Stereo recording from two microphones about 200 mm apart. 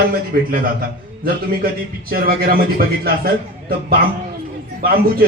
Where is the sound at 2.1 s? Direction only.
50° right (ahead or behind).